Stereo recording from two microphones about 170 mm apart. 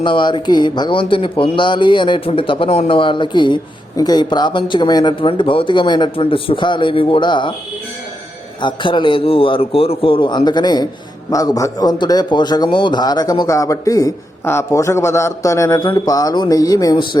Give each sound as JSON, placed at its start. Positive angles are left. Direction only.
{"t": 0.0, "sound": "speech", "side_deg": 30}
{"t": 8.6, "sound": "speech", "side_deg": 30}